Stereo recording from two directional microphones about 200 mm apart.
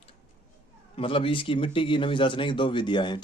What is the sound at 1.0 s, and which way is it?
Speech, 25° left (ahead or behind).